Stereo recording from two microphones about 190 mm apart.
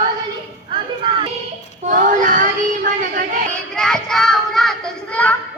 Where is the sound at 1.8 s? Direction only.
40° right (ahead or behind).